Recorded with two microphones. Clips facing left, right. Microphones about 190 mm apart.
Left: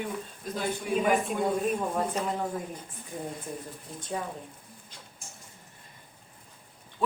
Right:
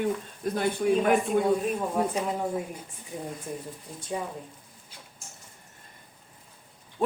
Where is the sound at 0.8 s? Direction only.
55° right (ahead or behind).